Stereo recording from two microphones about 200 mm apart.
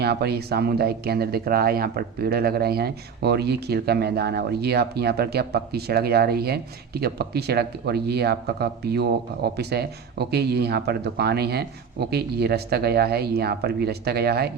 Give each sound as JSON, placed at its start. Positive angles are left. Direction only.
{"t": 0.0, "sound": "speech", "side_deg": -55}